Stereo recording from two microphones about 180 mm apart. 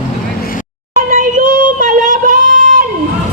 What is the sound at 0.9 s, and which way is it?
Child singing, 50° right (ahead or behind).